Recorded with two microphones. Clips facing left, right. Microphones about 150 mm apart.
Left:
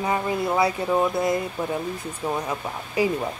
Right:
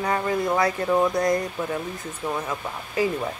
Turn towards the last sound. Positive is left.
turn(degrees=15)  # may be behind; listen again after turning